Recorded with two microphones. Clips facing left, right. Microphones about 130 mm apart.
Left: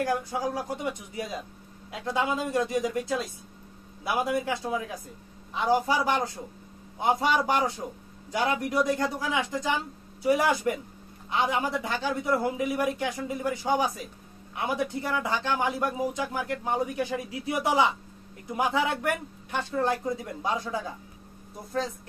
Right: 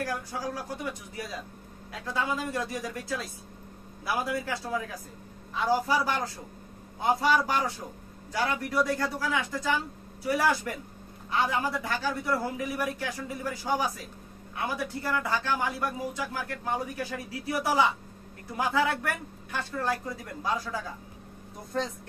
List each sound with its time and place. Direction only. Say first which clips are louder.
0.0 s a man's voice: left 5 dB; 25° left (ahead or behind)